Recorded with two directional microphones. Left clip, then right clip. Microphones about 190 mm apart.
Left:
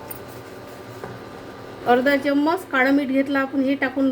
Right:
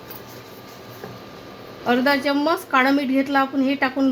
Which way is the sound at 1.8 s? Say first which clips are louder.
Left 1 dB; 50° right (ahead or behind).